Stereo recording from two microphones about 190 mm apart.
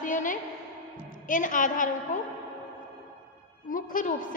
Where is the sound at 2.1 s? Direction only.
40° left (ahead or behind).